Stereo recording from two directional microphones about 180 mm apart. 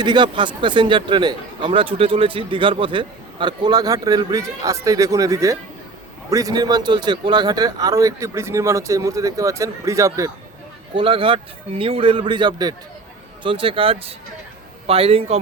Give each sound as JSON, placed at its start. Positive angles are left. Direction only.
{"t": 0.0, "sound": "a man's voice", "side_deg": -25}
{"t": 10.9, "sound": "speech", "side_deg": -30}